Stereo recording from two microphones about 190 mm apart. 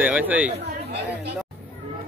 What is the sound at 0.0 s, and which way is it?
Speech, 10° right (ahead or behind).